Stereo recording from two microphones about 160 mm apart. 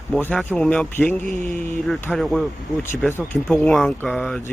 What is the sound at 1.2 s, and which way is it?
Mantra, 50° right (ahead or behind).